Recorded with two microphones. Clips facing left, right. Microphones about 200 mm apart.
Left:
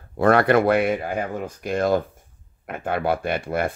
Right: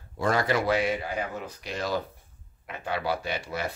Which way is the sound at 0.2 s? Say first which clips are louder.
Left 9 dB; 60° left (ahead or behind).